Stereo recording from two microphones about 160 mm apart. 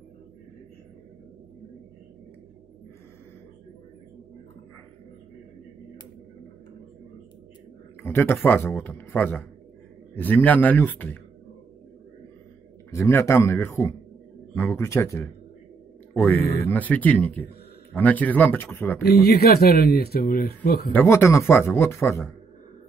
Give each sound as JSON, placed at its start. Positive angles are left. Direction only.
{"t": 8.0, "sound": "a man's voice", "side_deg": 15}
{"t": 12.9, "sound": "a man's voice", "side_deg": 15}
{"t": 19.0, "sound": "speech", "side_deg": 80}
{"t": 20.9, "sound": "a man's voice", "side_deg": 15}